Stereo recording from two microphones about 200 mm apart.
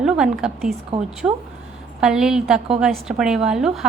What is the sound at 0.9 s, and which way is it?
Speech, 30° right (ahead or behind).